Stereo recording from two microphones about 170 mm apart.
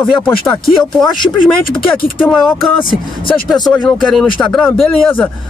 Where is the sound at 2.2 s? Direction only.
Centre (ahead or behind).